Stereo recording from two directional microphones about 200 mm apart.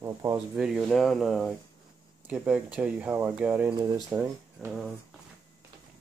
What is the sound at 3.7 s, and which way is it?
Speech, 20° right (ahead or behind).